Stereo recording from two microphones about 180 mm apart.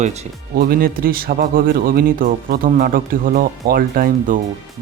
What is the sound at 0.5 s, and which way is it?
Speech, 55° right (ahead or behind).